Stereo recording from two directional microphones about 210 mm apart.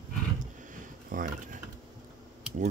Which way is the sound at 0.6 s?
40° right (ahead or behind).